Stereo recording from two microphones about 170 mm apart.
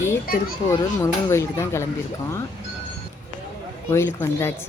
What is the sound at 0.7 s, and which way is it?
Speech, 15° left (ahead or behind).